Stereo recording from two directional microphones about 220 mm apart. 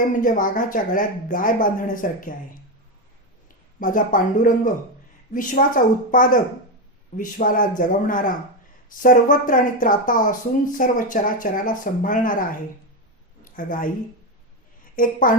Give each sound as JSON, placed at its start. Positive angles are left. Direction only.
{"t": 0.1, "sound": "speech", "side_deg": 40}
{"t": 3.8, "sound": "speech", "side_deg": 40}
{"t": 14.9, "sound": "speech", "side_deg": 40}